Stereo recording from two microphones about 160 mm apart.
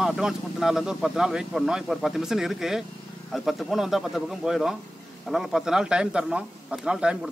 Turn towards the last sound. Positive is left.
turn(degrees=-5)  # may be behind; listen again after turning